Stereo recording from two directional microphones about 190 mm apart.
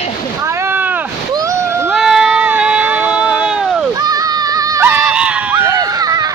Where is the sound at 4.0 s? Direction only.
20° right (ahead or behind).